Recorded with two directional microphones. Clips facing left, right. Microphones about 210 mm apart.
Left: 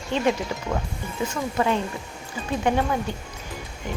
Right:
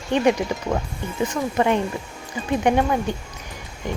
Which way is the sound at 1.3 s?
20° right (ahead or behind).